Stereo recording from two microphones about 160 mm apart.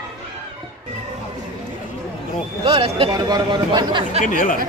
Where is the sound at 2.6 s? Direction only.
35° right (ahead or behind).